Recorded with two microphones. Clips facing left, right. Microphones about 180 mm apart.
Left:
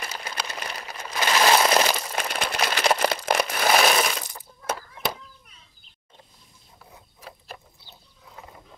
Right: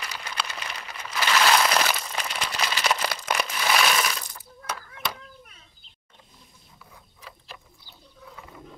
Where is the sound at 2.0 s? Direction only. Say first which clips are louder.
Left 3 dB; 50° left (ahead or behind); by 4.7 s 30° left (ahead or behind).